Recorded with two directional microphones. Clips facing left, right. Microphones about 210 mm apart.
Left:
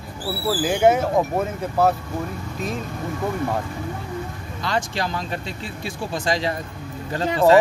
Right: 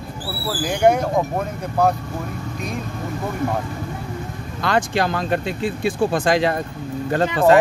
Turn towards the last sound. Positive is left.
turn(degrees=-60)  # may be behind; listen again after turning